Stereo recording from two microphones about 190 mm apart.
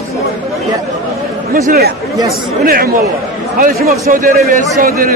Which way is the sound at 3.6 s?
50° right (ahead or behind).